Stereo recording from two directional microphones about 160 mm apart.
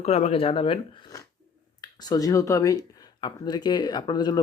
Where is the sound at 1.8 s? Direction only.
25° left (ahead or behind).